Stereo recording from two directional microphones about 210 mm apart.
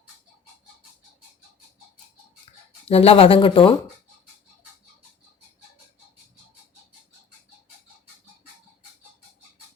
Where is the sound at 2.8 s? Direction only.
30° left (ahead or behind).